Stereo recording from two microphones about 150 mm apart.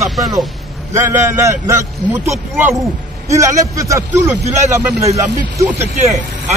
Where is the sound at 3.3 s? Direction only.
20° right (ahead or behind).